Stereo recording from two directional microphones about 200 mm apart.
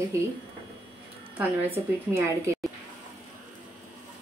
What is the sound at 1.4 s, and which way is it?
A woman's voice, 10° right (ahead or behind).